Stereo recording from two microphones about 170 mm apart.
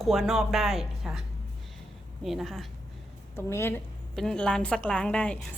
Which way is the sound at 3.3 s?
15° left (ahead or behind).